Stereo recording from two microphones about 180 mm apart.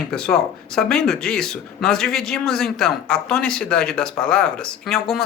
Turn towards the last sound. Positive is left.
turn(degrees=0)  # may be behind; listen again after turning